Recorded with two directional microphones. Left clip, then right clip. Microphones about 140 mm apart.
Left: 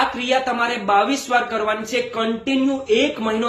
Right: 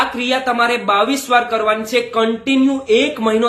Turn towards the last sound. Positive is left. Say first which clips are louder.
# right 5 dB
turn(degrees=-25)  # may be behind; listen again after turning